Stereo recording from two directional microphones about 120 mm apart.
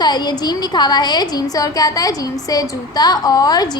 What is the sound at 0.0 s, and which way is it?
A woman's voice, 35° left (ahead or behind).